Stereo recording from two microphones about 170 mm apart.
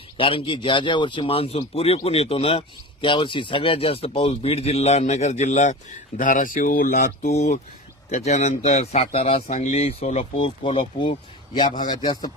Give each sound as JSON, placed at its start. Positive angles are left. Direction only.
{"t": 0.2, "sound": "speech", "side_deg": 30}
{"t": 7.3, "sound": "speech", "side_deg": 45}